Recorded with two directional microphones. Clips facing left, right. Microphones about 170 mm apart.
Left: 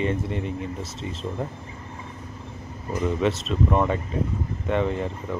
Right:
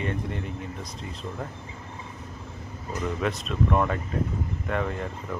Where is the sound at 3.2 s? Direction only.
Centre (ahead or behind).